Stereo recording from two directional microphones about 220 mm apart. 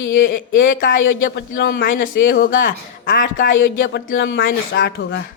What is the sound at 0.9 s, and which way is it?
Speech, 60° left (ahead or behind).